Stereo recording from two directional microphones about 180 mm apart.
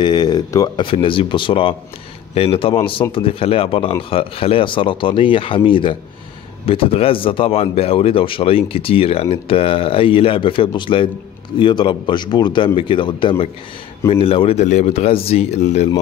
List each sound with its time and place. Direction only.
0.0 s speech: 25° left (ahead or behind); by 15.9 s 40° left (ahead or behind)